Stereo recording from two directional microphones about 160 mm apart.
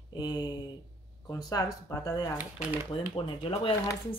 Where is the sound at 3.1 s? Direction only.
35° left (ahead or behind).